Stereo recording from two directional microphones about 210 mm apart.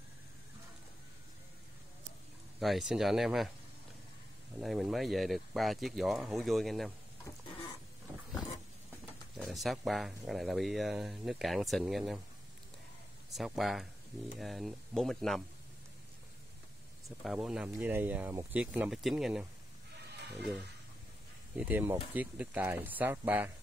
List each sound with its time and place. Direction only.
2.6 s speech: centre (ahead or behind)
4.6 s speech: centre (ahead or behind)
9.4 s speech: centre (ahead or behind)
13.3 s speech: centre (ahead or behind)
17.2 s speech: centre (ahead or behind)
20.2 s a sound: 55° right (ahead or behind)
21.5 s speech: 10° right (ahead or behind)